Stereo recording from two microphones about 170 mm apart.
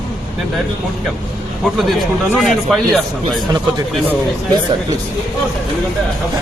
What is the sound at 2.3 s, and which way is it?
Speech, 5° left (ahead or behind).